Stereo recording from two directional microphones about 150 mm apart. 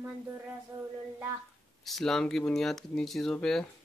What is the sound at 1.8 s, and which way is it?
Speech, centre (ahead or behind).